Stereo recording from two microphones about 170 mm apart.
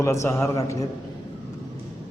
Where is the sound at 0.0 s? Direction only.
15° left (ahead or behind).